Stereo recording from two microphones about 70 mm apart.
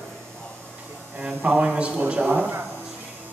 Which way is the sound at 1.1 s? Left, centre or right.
Centre.